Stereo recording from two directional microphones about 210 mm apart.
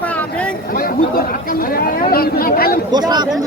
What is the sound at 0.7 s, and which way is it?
Chatter, 45° left (ahead or behind).